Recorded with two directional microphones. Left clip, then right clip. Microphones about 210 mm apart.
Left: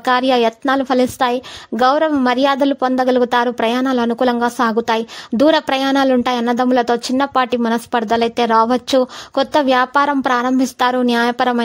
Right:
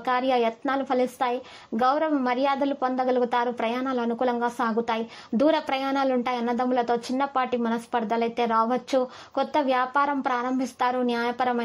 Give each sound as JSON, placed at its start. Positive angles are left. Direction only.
{"t": 0.0, "sound": "a woman's voice", "side_deg": 45}